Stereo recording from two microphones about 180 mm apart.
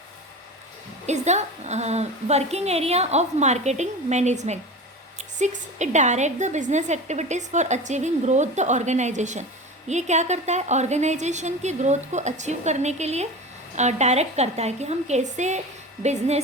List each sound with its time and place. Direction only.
1.0 s a woman's voice: 40° right (ahead or behind)